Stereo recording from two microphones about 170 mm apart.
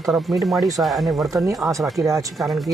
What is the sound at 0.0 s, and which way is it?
Speech, 5° right (ahead or behind).